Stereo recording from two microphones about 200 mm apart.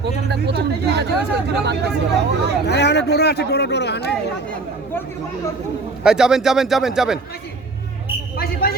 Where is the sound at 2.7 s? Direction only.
55° left (ahead or behind).